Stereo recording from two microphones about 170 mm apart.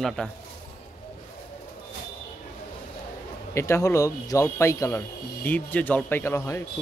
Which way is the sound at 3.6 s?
15° left (ahead or behind).